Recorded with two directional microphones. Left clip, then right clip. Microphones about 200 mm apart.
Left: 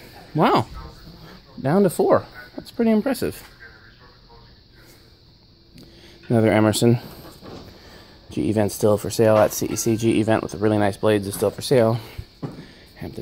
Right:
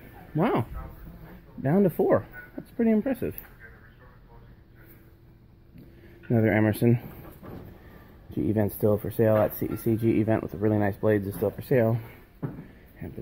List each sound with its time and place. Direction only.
0.4 s speech: 30° left (ahead or behind)
1.6 s speech: 15° left (ahead or behind)
6.2 s speech: 20° left (ahead or behind)
8.3 s speech: 10° left (ahead or behind)